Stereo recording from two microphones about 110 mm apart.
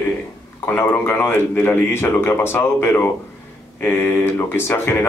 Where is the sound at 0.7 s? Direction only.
20° left (ahead or behind).